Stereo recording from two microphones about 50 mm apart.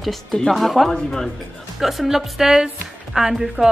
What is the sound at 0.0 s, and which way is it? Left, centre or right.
A woman's voice, centre.